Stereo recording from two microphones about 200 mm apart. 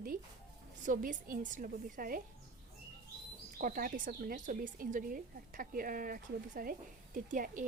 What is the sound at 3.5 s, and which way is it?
Speech, 45° right (ahead or behind).